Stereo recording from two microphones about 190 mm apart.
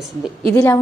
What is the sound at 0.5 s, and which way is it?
Speech, 15° left (ahead or behind).